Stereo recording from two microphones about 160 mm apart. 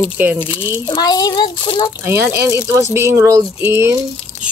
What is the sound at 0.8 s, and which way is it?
A child's voice, 30° left (ahead or behind).